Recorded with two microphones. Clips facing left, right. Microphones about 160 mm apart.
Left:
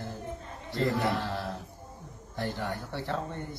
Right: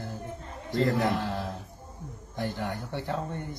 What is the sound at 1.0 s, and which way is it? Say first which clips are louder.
Speech: right 2 dB; 15° right (ahead or behind).